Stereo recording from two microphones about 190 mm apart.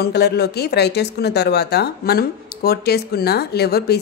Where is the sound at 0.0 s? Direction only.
60° left (ahead or behind).